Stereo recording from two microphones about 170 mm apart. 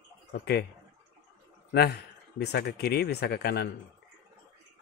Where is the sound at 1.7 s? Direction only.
70° left (ahead or behind).